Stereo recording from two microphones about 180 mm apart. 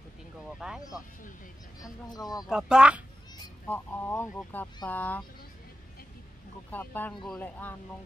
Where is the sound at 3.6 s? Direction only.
10° left (ahead or behind).